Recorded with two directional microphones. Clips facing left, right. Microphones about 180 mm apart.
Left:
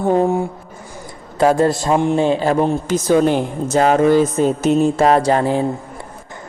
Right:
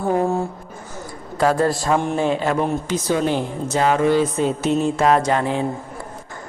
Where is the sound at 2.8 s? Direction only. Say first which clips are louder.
Left 6 dB; 45° left (ahead or behind).